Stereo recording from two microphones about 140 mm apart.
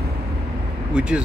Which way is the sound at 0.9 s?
5° right (ahead or behind).